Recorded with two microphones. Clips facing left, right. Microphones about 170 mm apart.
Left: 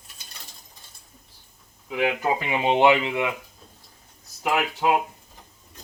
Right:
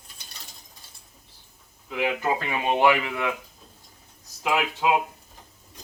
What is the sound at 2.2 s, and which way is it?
Speech, 20° left (ahead or behind).